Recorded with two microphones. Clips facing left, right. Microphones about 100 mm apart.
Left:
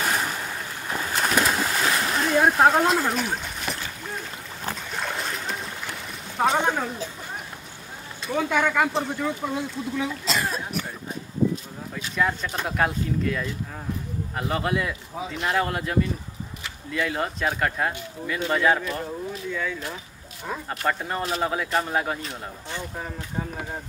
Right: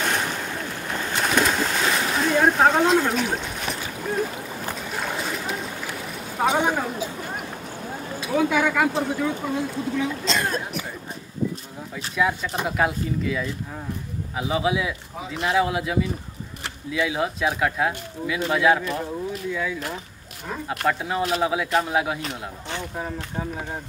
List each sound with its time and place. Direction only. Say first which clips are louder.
0.0 s a sound: right 1 dB; centre (ahead or behind)
1.0 s splash: right 1 dB; centre (ahead or behind)
4.9 s boat: right 3 dB; 5° right (ahead or behind)
6.3 s speech: right 1 dB; 10° right (ahead or behind)
8.2 s speech: right 2 dB; centre (ahead or behind)
12.2 s speech: right 2 dB; 5° right (ahead or behind)
20.8 s speech: right 3 dB; 5° right (ahead or behind)